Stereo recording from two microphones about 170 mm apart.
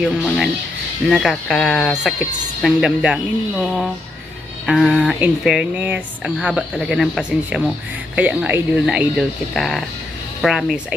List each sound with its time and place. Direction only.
0.0 s speech: centre (ahead or behind)